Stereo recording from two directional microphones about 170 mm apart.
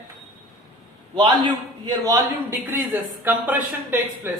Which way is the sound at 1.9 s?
15° right (ahead or behind).